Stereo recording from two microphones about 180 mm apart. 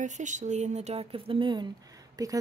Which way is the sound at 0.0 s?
45° right (ahead or behind).